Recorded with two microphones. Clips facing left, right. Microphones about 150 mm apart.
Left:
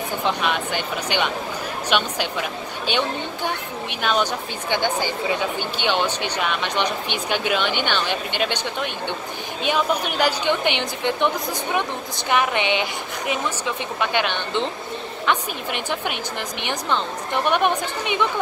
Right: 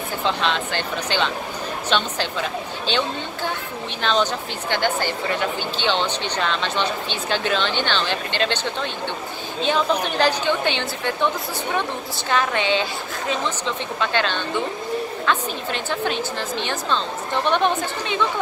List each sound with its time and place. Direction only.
0.2 s a woman's voice: 15° left (ahead or behind)
4.0 s a woman's voice: 10° left (ahead or behind)
12.3 s a woman's voice: 15° left (ahead or behind)